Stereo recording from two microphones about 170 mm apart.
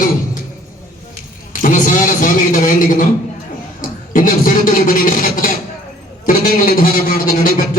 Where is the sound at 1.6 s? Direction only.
50° left (ahead or behind).